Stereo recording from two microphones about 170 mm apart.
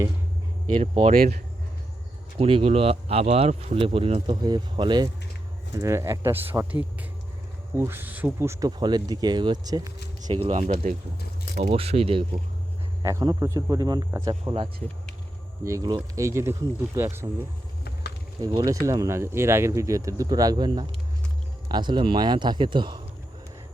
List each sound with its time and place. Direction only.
1.1 s speech: 55° right (ahead or behind)
2.4 s speech: 35° right (ahead or behind)
10.4 s speech: 40° right (ahead or behind)
13.0 s speech: 20° right (ahead or behind)
15.6 s speech: 20° right (ahead or behind)
18.3 s speech: 20° right (ahead or behind)